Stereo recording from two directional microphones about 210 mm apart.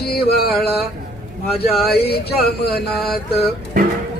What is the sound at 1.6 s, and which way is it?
Music, 50° left (ahead or behind).